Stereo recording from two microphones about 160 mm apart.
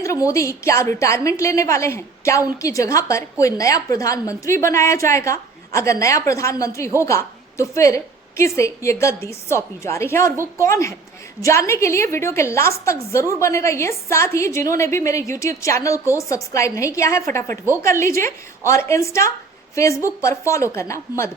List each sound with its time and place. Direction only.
0.0 s a woman's voice: 20° left (ahead or behind)
18.6 s a woman's voice: 15° left (ahead or behind)